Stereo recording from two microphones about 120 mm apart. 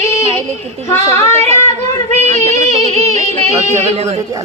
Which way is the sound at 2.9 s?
65° right (ahead or behind).